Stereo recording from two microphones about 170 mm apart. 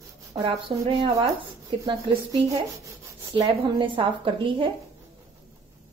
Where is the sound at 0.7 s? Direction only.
35° right (ahead or behind).